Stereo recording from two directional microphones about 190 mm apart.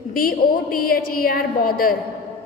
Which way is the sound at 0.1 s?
50° left (ahead or behind).